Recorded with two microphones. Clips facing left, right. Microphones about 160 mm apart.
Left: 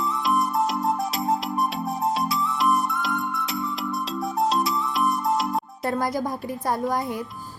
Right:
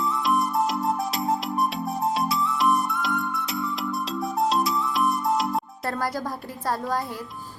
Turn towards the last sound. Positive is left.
turn(degrees=15)  # may be behind; listen again after turning